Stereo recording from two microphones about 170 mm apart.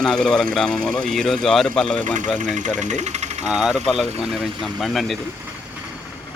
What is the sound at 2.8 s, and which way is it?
Jackhammer, 45° right (ahead or behind).